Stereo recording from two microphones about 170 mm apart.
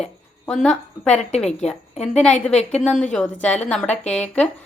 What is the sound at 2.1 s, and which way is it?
A woman's voice, 5° left (ahead or behind).